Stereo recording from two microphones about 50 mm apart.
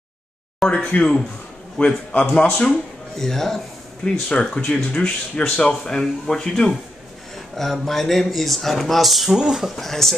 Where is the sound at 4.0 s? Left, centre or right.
Centre.